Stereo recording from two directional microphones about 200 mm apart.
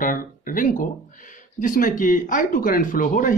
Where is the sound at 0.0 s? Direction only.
45° left (ahead or behind).